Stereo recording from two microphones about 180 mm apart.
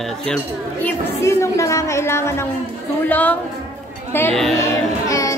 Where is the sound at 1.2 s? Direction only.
15° left (ahead or behind).